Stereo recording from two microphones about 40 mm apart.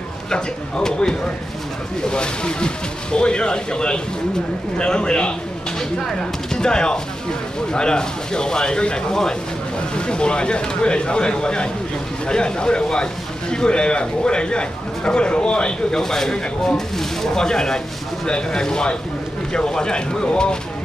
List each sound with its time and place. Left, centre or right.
0.3 s speech: centre
15.9 s speech: centre